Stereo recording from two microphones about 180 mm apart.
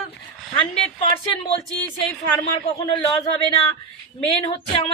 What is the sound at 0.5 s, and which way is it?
Speech, 25° left (ahead or behind).